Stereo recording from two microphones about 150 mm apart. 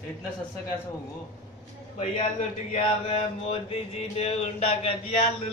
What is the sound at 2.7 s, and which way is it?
Mantra, 40° left (ahead or behind).